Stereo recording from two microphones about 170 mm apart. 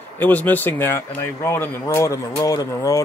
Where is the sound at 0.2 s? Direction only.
10° left (ahead or behind).